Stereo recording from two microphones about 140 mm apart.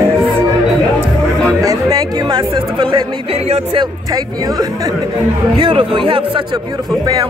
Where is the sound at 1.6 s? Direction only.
30° right (ahead or behind).